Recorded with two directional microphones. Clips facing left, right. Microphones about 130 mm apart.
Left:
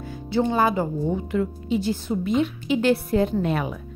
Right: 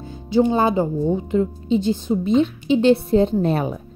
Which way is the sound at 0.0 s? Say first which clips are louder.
Right 4 dB; 25° right (ahead or behind).